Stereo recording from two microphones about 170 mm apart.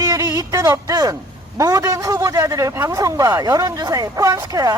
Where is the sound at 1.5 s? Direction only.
20° right (ahead or behind).